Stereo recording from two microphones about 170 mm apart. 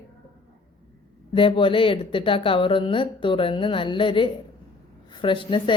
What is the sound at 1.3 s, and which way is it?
A woman's voice, 30° left (ahead or behind).